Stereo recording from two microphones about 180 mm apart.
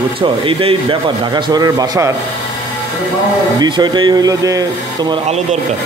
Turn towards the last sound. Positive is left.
turn(degrees=-20)  # may be behind; listen again after turning